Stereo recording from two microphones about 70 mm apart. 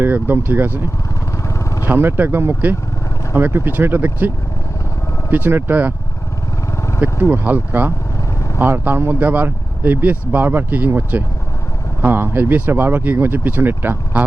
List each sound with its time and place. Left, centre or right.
0.0 s speech: right
1.5 s vehicle: left
1.9 s speech: right
5.3 s speech: right
7.0 s speech: right